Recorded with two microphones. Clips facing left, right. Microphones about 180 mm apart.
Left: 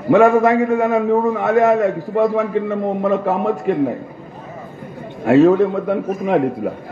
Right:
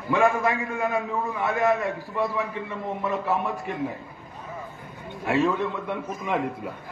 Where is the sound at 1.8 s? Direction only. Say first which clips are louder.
Left 11 dB; 55° left (ahead or behind).